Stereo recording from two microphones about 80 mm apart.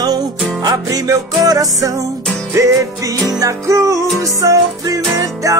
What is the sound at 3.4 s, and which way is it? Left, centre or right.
Music, right.